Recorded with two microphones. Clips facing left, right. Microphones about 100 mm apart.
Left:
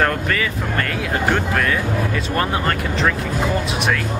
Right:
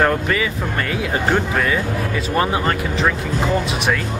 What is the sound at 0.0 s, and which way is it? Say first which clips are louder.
Speech: right 2 dB; 5° right (ahead or behind).